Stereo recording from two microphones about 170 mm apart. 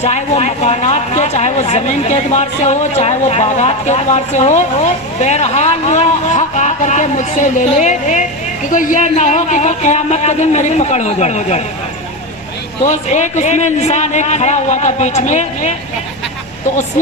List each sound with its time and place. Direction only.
0.0 s speech: 40° left (ahead or behind)
12.8 s speech: 45° left (ahead or behind)